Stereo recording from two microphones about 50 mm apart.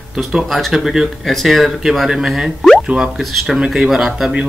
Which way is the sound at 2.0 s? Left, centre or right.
Centre.